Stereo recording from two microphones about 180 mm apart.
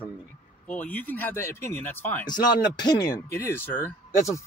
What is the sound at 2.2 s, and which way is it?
Speech, 25° left (ahead or behind).